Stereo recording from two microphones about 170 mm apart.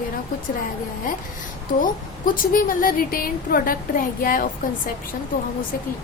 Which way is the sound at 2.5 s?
55° left (ahead or behind).